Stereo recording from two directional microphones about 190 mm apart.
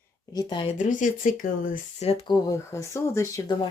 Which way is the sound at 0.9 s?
45° left (ahead or behind).